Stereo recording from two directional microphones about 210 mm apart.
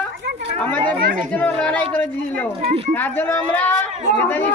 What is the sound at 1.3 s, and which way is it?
Speech, 5° left (ahead or behind).